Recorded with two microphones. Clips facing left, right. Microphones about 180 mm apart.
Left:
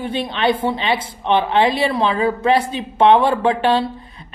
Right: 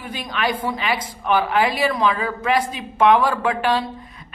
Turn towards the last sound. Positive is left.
turn(degrees=30)  # may be behind; listen again after turning